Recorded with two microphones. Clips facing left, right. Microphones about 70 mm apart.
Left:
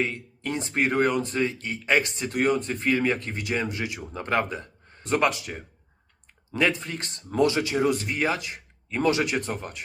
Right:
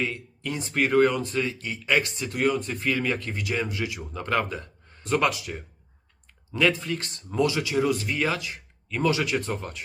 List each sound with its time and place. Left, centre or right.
0.0 s speech: left